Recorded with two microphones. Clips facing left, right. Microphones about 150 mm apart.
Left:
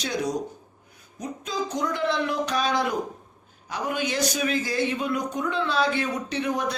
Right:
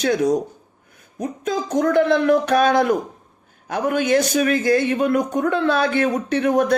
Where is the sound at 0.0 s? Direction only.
50° right (ahead or behind).